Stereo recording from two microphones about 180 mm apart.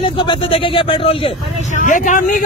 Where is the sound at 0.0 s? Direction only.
30° left (ahead or behind).